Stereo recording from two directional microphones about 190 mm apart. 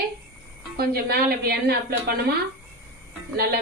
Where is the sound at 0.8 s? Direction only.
55° right (ahead or behind).